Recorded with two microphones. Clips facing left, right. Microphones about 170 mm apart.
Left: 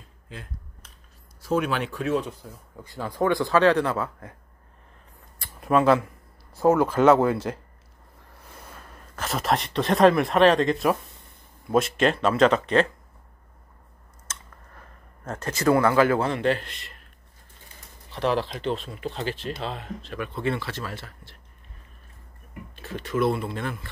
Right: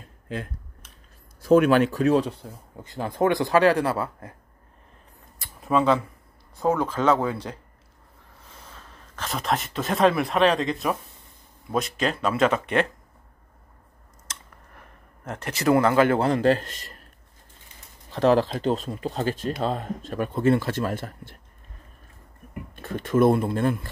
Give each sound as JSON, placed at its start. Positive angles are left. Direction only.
{"t": 1.4, "sound": "speech", "side_deg": -55}
{"t": 2.7, "sound": "speech", "side_deg": -20}
{"t": 5.6, "sound": "speech", "side_deg": 0}
{"t": 14.8, "sound": "speech", "side_deg": -15}
{"t": 18.1, "sound": "speech", "side_deg": -40}
{"t": 22.5, "sound": "speech", "side_deg": -50}